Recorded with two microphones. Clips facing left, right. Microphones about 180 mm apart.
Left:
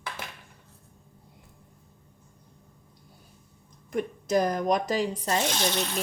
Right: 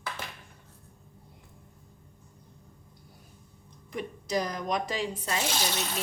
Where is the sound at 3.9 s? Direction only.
50° left (ahead or behind).